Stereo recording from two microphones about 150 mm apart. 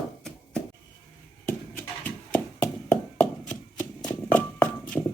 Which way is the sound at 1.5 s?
10° left (ahead or behind).